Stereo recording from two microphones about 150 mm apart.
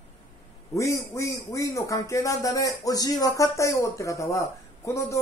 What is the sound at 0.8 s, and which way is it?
Speech, 20° left (ahead or behind).